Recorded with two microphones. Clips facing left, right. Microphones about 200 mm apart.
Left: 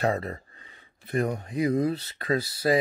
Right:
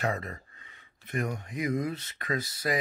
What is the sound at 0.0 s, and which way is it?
Speech, 35° left (ahead or behind).